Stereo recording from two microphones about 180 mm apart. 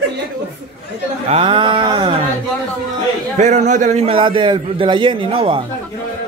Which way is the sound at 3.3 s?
40° right (ahead or behind).